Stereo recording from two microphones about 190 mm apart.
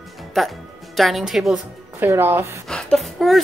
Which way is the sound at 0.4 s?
Centre (ahead or behind).